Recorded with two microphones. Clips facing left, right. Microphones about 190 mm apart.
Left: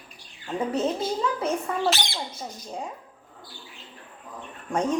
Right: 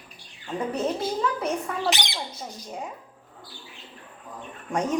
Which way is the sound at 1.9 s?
15° right (ahead or behind).